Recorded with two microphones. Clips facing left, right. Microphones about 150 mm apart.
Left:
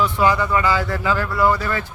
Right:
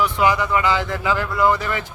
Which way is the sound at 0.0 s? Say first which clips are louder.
Left 1 dB; 15° right (ahead or behind).